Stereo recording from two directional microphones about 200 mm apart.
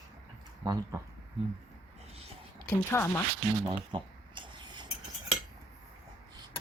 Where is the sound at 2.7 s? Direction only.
10° left (ahead or behind).